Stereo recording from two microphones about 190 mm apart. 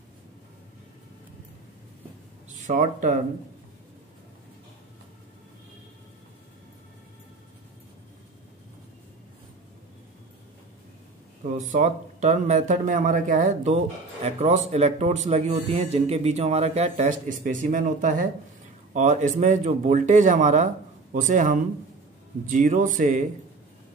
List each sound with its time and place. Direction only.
2.5 s speech: 40° right (ahead or behind)
11.5 s speech: 40° right (ahead or behind)